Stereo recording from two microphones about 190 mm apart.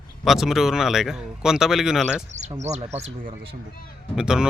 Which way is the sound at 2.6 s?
35° right (ahead or behind).